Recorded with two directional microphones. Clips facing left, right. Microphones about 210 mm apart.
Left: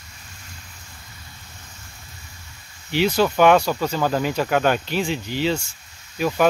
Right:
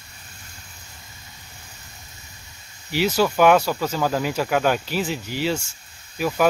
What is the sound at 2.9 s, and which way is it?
Speech, 5° right (ahead or behind).